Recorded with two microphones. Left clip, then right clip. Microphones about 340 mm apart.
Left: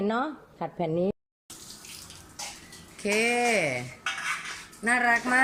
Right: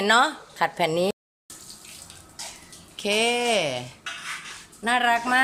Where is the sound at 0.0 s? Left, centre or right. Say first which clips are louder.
Right 9 dB; right.